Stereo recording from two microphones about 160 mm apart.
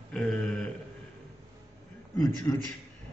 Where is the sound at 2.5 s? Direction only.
15° left (ahead or behind).